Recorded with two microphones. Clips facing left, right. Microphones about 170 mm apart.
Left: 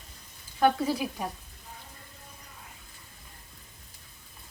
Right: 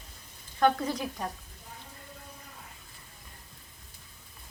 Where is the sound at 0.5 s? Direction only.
10° left (ahead or behind).